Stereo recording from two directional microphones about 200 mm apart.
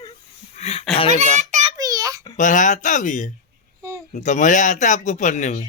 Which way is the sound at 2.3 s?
40° left (ahead or behind).